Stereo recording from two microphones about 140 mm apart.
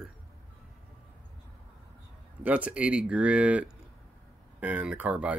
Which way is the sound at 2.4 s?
10° right (ahead or behind).